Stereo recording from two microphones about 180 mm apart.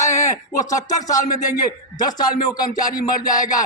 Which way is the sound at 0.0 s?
15° left (ahead or behind).